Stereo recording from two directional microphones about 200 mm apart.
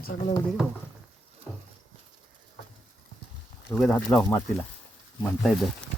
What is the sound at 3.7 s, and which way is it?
Speech, 5° left (ahead or behind).